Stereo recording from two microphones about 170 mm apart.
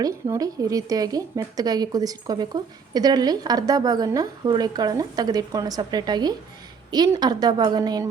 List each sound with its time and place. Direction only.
0.0 s a woman's voice: 20° right (ahead or behind)